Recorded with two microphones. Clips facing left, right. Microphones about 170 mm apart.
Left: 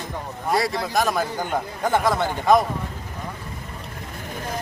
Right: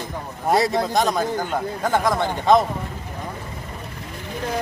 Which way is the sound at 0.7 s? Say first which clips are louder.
Right 2 dB; 20° right (ahead or behind).